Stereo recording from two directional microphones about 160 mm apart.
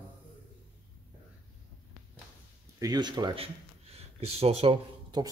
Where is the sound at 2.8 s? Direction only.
25° right (ahead or behind).